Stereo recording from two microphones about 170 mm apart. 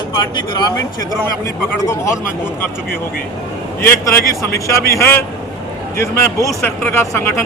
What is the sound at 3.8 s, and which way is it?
A man's voice, 15° left (ahead or behind).